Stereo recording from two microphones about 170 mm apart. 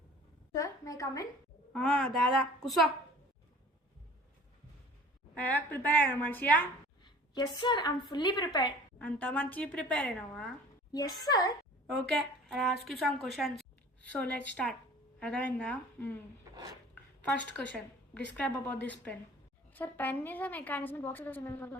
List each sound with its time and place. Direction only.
0.5 s a woman's voice: 20° left (ahead or behind)
1.7 s speech: 5° left (ahead or behind)
5.3 s a woman's voice: 10° left (ahead or behind)
7.0 s a sound: 25° left (ahead or behind)
7.6 s a woman's voice: 25° left (ahead or behind)
9.0 s a woman's voice: 10° left (ahead or behind)
10.9 s a woman's voice: 25° left (ahead or behind)
12.5 s a woman's voice: centre (ahead or behind)
16.9 s a sound: 10° left (ahead or behind)
18.3 s a woman's voice: 10° left (ahead or behind)